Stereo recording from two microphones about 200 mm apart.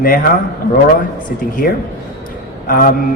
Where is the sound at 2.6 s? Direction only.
45° left (ahead or behind).